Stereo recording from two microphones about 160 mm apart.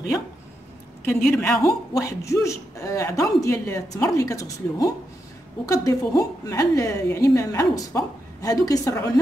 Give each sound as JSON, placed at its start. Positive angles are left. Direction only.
{"t": 1.0, "sound": "a woman's voice", "side_deg": 15}